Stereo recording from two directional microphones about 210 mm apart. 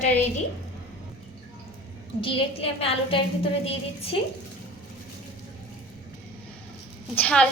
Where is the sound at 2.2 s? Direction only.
25° left (ahead or behind).